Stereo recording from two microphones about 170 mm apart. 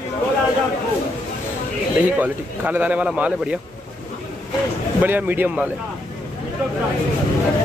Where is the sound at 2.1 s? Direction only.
10° right (ahead or behind).